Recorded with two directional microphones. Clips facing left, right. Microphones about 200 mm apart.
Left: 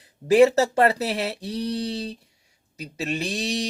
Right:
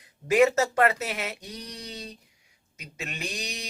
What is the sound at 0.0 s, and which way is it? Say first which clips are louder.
Speech: left 5 dB; 35° left (ahead or behind).